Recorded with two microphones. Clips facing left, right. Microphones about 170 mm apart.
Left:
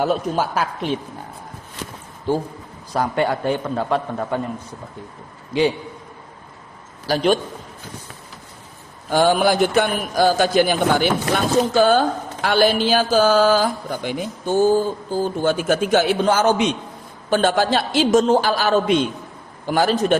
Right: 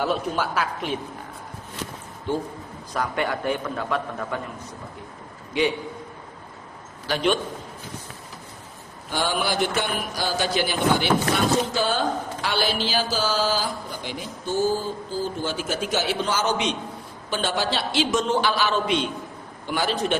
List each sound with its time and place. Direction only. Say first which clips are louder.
0.0 s speech: left 4 dB; 45° left (ahead or behind)
2.9 s a man's voice: left 6 dB; 30° left (ahead or behind)
7.1 s a man's voice: left 5 dB; 40° left (ahead or behind)
9.0 s speech: left 9 dB; 50° left (ahead or behind)